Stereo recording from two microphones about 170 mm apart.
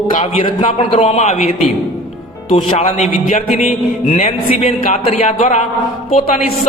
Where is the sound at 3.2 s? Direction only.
45° left (ahead or behind).